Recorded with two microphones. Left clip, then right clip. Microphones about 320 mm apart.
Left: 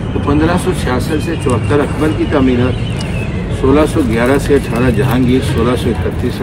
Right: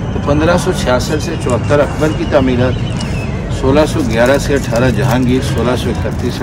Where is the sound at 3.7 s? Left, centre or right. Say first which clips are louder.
Right 2 dB; right.